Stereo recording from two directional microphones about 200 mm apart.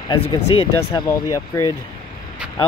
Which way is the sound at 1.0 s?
15° left (ahead or behind).